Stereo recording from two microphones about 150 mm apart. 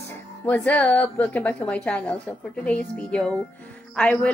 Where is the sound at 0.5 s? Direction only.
10° left (ahead or behind).